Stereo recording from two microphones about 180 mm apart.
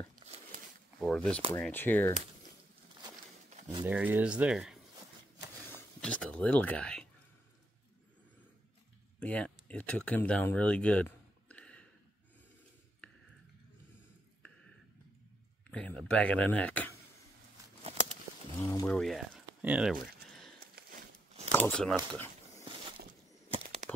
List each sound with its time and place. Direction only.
0.1 s a sound: 35° right (ahead or behind)
1.0 s speech: 5° left (ahead or behind)
3.8 s speech: 10° right (ahead or behind)
5.7 s speech: 10° left (ahead or behind)
9.2 s speech: 5° left (ahead or behind)
15.7 s speech: 5° left (ahead or behind)
18.6 s speech: 20° left (ahead or behind)
18.9 s speech: centre (ahead or behind)
20.8 s a sound: 55° right (ahead or behind)
21.5 s speech: 10° left (ahead or behind)
23.5 s bird flight: 40° right (ahead or behind)